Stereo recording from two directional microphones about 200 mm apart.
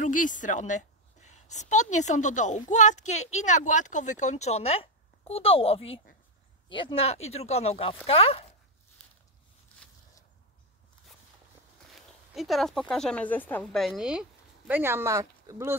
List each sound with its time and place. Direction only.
0.0 s a woman's voice: 40° left (ahead or behind)
12.4 s speech: centre (ahead or behind); by 15.7 s 15° right (ahead or behind)